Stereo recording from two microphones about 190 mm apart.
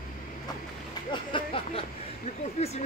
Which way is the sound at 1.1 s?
25° left (ahead or behind).